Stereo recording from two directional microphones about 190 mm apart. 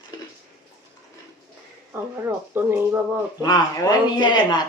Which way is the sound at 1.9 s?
15° right (ahead or behind).